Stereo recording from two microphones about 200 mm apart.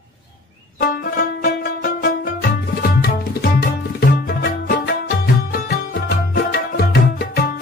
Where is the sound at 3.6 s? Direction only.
50° left (ahead or behind).